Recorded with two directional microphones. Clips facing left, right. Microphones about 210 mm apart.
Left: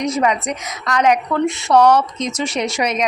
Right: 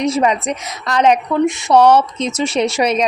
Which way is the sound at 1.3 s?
15° right (ahead or behind).